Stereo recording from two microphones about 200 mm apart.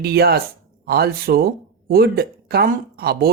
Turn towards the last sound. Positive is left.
turn(degrees=-50)  # may be behind; listen again after turning